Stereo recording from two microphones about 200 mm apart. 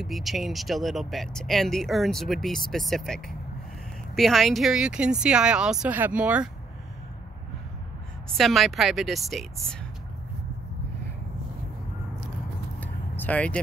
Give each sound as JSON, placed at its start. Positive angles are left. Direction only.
{"t": 0.0, "sound": "speech", "side_deg": 0}
{"t": 8.4, "sound": "speech", "side_deg": 0}
{"t": 12.8, "sound": "vehicle", "side_deg": 10}